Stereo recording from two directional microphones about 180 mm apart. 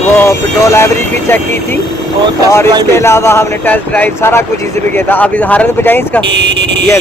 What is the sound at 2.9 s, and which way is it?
Speech, 15° left (ahead or behind).